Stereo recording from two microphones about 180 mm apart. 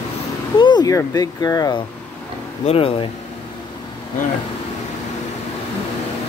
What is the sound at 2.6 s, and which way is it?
Speech, 30° left (ahead or behind).